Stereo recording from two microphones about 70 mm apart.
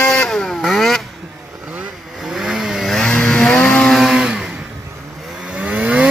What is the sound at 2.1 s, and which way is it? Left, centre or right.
Vehicle, centre.